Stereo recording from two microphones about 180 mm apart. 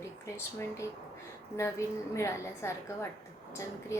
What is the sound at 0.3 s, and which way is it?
Speech, 15° left (ahead or behind).